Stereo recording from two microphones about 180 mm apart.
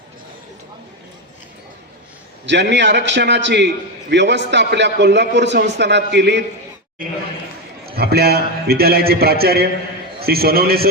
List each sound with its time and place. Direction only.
2.5 s a man's voice: 75° right (ahead or behind)
7.9 s a man's voice: 60° right (ahead or behind)